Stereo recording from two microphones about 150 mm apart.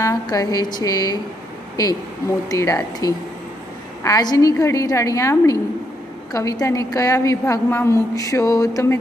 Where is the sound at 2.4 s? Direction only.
20° left (ahead or behind).